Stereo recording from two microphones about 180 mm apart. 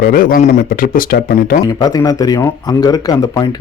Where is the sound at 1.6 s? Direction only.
20° left (ahead or behind).